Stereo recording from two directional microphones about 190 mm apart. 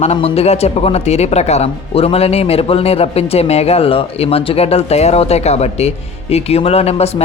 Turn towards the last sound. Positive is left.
turn(degrees=35)  # may be behind; listen again after turning